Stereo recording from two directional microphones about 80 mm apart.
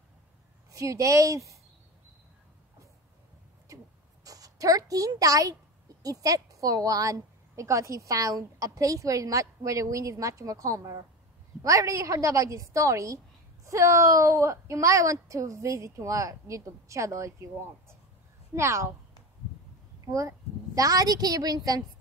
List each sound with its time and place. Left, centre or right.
0.7 s speech: right
3.6 s a sound: right
6.0 s a woman's voice: right
20.1 s a woman's voice: right